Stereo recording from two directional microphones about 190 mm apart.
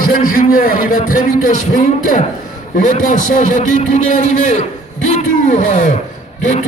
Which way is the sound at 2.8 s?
40° left (ahead or behind).